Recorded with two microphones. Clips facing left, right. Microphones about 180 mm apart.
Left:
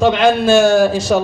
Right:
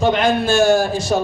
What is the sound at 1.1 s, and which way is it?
Speech, 85° left.